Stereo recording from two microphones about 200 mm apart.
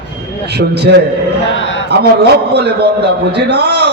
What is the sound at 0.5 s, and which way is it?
A man's voice, 55° right (ahead or behind).